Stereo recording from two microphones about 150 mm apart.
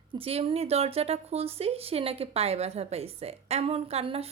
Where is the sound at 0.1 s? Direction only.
40° right (ahead or behind).